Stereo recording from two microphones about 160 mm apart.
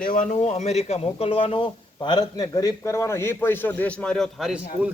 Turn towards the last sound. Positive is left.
turn(degrees=-5)  # may be behind; listen again after turning